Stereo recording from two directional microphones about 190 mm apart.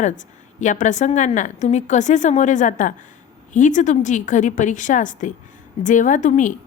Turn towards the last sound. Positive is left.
turn(degrees=40)  # may be behind; listen again after turning